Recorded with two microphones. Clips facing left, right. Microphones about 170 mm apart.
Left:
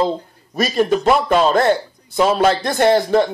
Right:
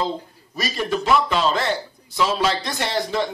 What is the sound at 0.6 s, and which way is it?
A man's voice, 50° left (ahead or behind).